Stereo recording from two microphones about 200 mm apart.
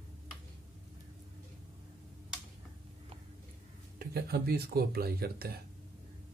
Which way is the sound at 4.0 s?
50° right (ahead or behind).